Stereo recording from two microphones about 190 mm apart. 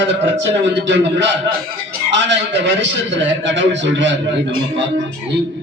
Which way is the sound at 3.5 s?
70° right (ahead or behind).